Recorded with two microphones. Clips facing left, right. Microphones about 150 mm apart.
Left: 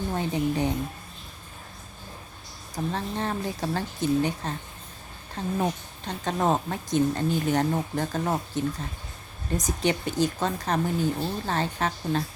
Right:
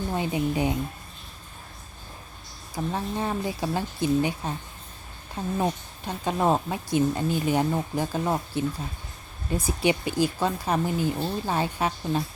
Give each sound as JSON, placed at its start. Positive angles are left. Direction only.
{"t": 0.2, "sound": "speech", "side_deg": -10}
{"t": 2.7, "sound": "speech", "side_deg": -10}
{"t": 5.5, "sound": "speech", "side_deg": -10}